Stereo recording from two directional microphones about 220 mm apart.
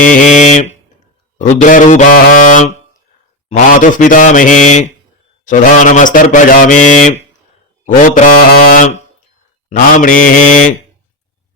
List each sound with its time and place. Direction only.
0.0 s a sound: 35° left (ahead or behind)
1.4 s speech: 35° left (ahead or behind)
3.8 s speech: 35° left (ahead or behind)